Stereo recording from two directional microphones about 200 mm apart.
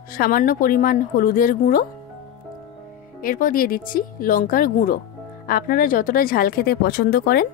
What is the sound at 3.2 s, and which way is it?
Speech, 45° left (ahead or behind).